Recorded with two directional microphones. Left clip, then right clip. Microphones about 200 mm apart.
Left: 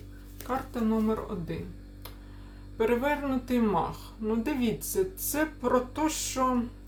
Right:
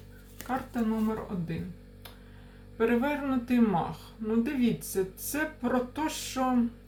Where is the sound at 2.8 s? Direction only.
15° left (ahead or behind).